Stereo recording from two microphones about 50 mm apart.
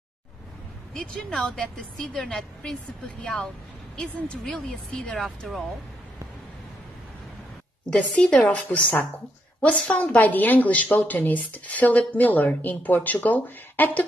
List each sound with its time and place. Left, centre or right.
0.9 s a woman's voice: centre
3.9 s a woman's voice: centre
8.1 s a woman's voice: left